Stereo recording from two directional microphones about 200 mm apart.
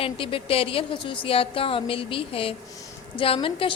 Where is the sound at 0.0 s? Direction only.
25° left (ahead or behind).